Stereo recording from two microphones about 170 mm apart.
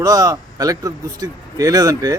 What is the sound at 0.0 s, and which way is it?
Speech, 20° right (ahead or behind).